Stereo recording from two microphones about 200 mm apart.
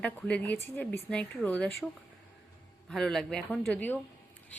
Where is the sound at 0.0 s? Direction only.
5° left (ahead or behind).